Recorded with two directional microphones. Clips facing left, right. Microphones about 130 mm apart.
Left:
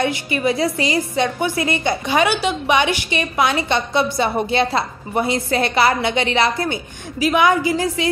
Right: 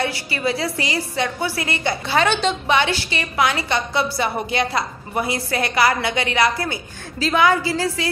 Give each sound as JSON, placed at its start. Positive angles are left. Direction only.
{"t": 0.0, "sound": "a woman's voice", "side_deg": 20}